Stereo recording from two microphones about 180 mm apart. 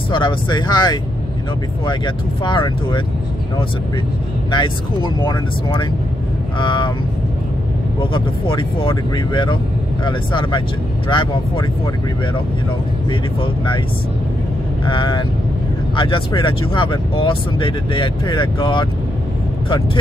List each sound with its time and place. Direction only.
0.1 s speech: 25° left (ahead or behind)
4.5 s speech: 25° left (ahead or behind)
8.0 s speech: 30° left (ahead or behind)
13.1 s speech: 30° left (ahead or behind)
14.9 s speech: 25° left (ahead or behind)